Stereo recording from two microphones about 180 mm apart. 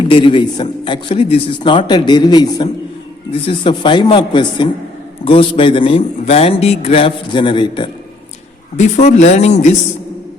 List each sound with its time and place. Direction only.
0.1 s a man's voice: 30° left (ahead or behind)
9.0 s a man's voice: 40° left (ahead or behind)